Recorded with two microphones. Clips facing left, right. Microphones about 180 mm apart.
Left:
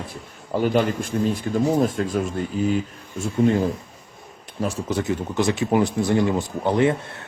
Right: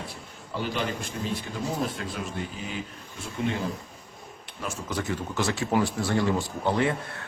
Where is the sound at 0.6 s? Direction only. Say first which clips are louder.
Left 9 dB; 50° left (ahead or behind).